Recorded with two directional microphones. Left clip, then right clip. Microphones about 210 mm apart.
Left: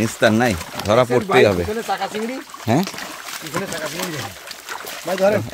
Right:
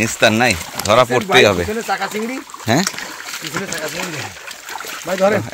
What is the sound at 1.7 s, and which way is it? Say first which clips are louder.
Speech: right 2 dB; 35° right (ahead or behind).